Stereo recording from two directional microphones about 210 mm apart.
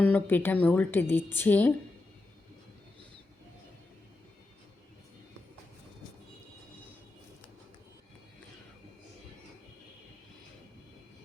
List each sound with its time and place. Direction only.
0.0 s a woman's voice: 10° left (ahead or behind)